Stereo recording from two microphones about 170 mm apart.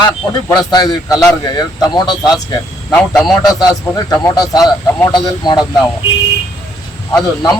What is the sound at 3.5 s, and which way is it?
Speech, 20° left (ahead or behind).